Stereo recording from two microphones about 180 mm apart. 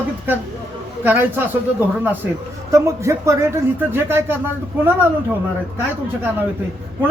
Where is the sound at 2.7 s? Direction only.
15° right (ahead or behind).